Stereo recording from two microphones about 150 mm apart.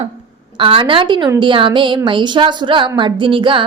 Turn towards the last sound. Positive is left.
turn(degrees=-35)  # may be behind; listen again after turning